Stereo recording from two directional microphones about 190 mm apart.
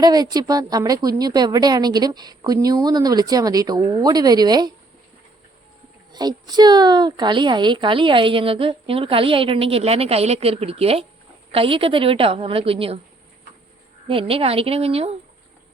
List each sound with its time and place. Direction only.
0.0 s a woman's voice: 20° right (ahead or behind)
6.1 s a woman's voice: 20° right (ahead or behind)
14.1 s speech: 30° right (ahead or behind)